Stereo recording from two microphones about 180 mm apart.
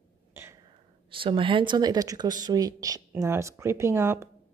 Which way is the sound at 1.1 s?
30° right (ahead or behind).